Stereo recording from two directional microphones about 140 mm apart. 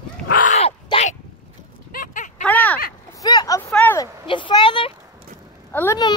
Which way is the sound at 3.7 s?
10° left (ahead or behind).